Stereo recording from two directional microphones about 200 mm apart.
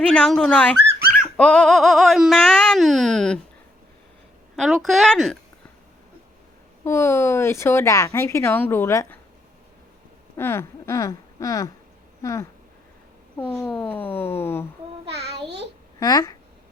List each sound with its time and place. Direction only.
0.0 s a sound: 5° left (ahead or behind)
4.5 s a sound: centre (ahead or behind)
6.8 s speech: 15° left (ahead or behind)
10.3 s speech: 10° left (ahead or behind)
13.7 s speech: 5° left (ahead or behind)
15.2 s a child's voice: 55° right (ahead or behind)
16.0 s speech: 20° left (ahead or behind)